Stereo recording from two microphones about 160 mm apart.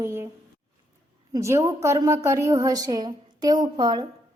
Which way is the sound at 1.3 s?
20° right (ahead or behind).